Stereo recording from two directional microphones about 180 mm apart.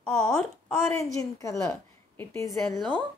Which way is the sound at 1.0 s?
15° left (ahead or behind).